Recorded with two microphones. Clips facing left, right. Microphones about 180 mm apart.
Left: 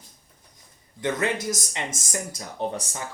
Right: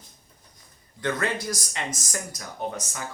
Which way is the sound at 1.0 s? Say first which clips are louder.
Left 2 dB; 20° left (ahead or behind).